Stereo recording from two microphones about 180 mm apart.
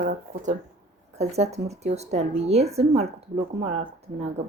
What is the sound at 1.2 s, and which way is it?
Speech, 35° right (ahead or behind).